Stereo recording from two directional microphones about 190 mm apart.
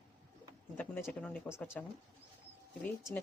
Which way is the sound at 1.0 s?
5° left (ahead or behind).